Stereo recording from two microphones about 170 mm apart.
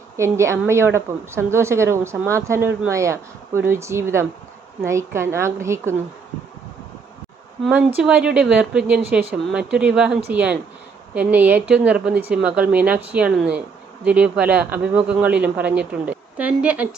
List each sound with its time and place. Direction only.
0.2 s speech: 15° right (ahead or behind)
8.0 s speech: 5° right (ahead or behind)